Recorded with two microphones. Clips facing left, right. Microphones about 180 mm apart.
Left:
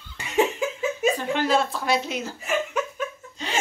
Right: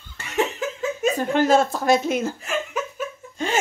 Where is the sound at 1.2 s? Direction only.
45° right (ahead or behind).